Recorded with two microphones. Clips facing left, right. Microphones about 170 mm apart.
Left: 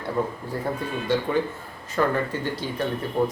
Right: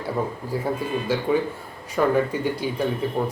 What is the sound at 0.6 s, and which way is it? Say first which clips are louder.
A man's voice: right 2 dB; 5° right (ahead or behind).